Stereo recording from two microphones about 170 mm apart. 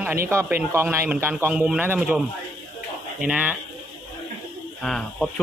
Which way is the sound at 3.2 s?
10° right (ahead or behind).